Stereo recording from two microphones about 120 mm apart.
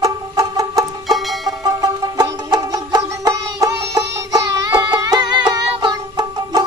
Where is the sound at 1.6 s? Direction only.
35° right (ahead or behind).